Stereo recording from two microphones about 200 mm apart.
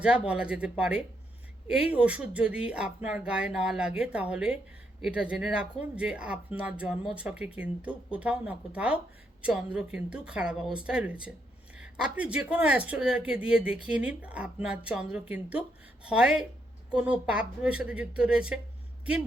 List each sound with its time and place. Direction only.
0.0 s speech: 5° right (ahead or behind)